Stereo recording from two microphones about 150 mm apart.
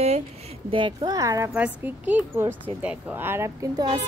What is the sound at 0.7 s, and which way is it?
Speech, 35° right (ahead or behind).